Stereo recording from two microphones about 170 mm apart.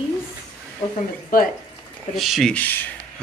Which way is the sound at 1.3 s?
55° left (ahead or behind).